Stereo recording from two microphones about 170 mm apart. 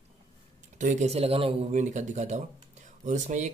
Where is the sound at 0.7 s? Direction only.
45° right (ahead or behind).